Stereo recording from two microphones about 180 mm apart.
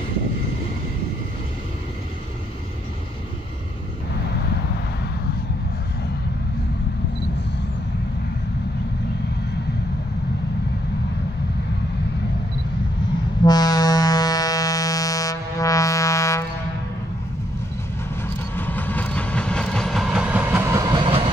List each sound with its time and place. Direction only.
13.5 s music: 20° left (ahead or behind)
18.2 s train: 10° left (ahead or behind); by 21.3 s 30° right (ahead or behind)